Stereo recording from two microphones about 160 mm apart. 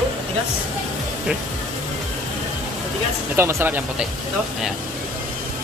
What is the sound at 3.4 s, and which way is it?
Speech, 15° right (ahead or behind).